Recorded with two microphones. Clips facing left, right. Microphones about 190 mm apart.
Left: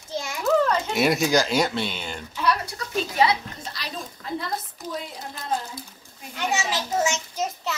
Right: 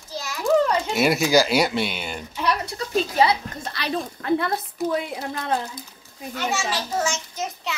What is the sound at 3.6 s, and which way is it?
A woman's voice, 60° right (ahead or behind).